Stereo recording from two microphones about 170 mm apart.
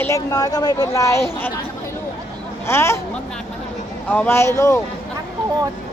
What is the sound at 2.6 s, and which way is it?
Speech, 15° left (ahead or behind).